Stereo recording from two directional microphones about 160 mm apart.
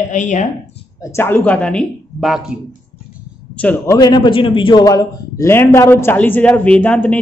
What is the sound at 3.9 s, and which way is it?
A man's voice, 25° left (ahead or behind).